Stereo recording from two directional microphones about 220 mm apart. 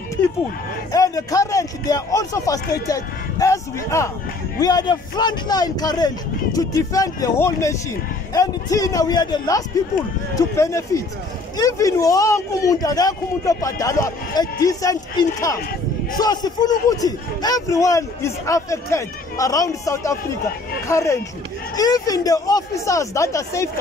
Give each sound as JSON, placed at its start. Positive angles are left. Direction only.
{"t": 0.9, "sound": "a man's voice", "side_deg": 15}
{"t": 16.2, "sound": "a man's voice", "side_deg": 20}